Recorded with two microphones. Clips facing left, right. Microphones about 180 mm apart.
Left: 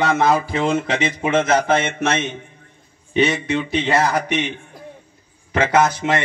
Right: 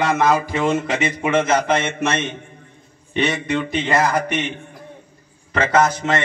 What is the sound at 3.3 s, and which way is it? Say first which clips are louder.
Speech: left 1 dB; 5° left (ahead or behind).